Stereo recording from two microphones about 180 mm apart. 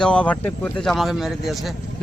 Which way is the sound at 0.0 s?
5° left (ahead or behind).